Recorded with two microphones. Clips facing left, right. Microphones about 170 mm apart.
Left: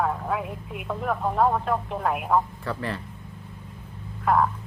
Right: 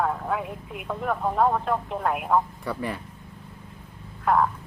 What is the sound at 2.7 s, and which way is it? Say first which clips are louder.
Speech: even; 10° right (ahead or behind).